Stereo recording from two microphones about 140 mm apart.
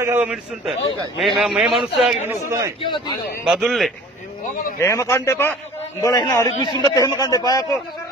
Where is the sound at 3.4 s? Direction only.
5° right (ahead or behind).